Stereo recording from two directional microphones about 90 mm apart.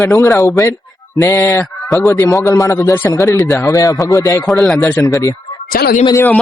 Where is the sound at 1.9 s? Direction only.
35° left (ahead or behind).